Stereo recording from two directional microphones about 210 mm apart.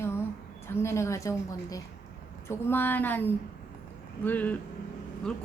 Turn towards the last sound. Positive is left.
turn(degrees=5)  # may be behind; listen again after turning